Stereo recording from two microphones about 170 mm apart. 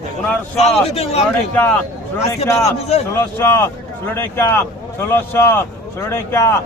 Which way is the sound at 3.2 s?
15° left (ahead or behind).